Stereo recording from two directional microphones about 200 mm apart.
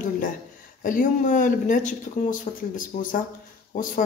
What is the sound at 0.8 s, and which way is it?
Speech, 40° left (ahead or behind).